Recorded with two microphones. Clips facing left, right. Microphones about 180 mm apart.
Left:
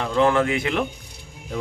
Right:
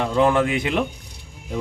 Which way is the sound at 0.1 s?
15° right (ahead or behind).